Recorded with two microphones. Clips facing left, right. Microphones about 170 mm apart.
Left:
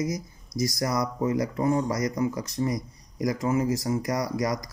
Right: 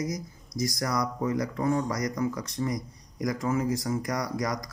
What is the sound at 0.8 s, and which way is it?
Speech, 20° left (ahead or behind).